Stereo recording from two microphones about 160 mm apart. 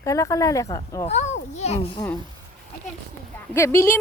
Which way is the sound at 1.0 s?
45° left (ahead or behind).